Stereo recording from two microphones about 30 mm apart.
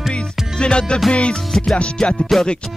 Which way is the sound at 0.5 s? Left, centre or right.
Left.